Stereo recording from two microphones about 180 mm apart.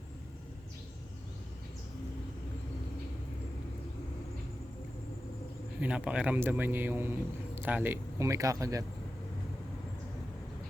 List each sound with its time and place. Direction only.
5.8 s speech: 5° right (ahead or behind)